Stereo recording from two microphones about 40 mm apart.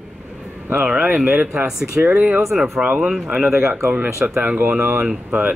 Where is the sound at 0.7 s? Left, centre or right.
Right.